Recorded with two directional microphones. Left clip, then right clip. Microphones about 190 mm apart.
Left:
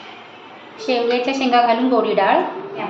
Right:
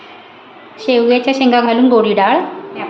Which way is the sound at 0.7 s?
60° right (ahead or behind).